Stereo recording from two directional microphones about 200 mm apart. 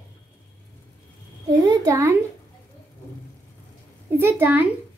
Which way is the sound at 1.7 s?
15° right (ahead or behind).